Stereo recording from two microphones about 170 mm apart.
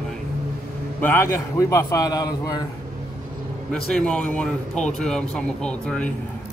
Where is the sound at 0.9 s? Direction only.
10° left (ahead or behind).